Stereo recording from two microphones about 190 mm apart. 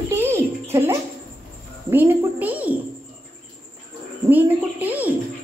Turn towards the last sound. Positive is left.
turn(degrees=-10)  # may be behind; listen again after turning